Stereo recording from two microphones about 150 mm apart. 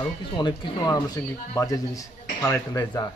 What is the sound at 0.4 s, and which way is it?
Speech, 30° left (ahead or behind).